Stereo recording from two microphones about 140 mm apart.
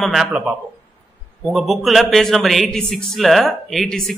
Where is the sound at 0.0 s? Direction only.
Centre (ahead or behind).